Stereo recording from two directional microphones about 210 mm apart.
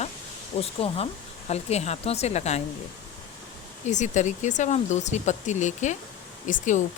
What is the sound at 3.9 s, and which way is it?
Speech, 35° left (ahead or behind).